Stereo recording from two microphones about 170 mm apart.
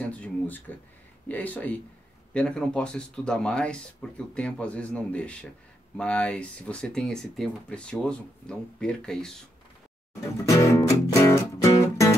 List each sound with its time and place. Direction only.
0.0 s speech: 10° left (ahead or behind)
10.4 s music: 20° left (ahead or behind)